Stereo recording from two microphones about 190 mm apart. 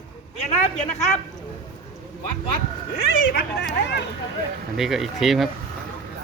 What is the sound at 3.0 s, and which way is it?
Speech, 55° left (ahead or behind).